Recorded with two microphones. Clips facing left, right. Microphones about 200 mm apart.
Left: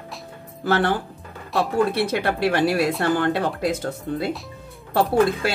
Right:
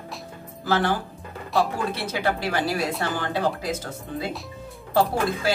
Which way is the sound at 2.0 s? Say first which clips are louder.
Left 4 dB; 60° left (ahead or behind).